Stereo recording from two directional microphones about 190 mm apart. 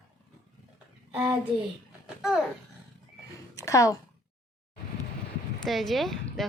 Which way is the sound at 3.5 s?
15° left (ahead or behind).